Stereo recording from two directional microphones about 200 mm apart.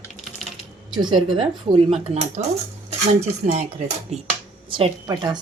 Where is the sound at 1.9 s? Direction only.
35° right (ahead or behind).